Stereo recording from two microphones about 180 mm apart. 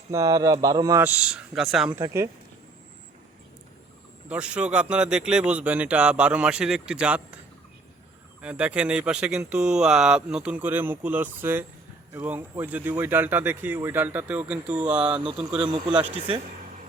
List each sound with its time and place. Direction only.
0.1 s speech: 20° right (ahead or behind); by 1.9 s 5° right (ahead or behind)
1.9 s speech: 20° right (ahead or behind)
4.3 s speech: 5° right (ahead or behind)
8.4 s speech: 5° right (ahead or behind)
16.1 s a man's voice: 30° right (ahead or behind)